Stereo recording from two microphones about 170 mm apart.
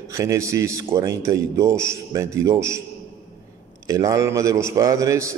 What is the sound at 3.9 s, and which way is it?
A man's voice, 20° right (ahead or behind).